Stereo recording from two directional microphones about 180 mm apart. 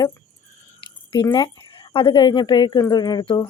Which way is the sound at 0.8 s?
25° left (ahead or behind).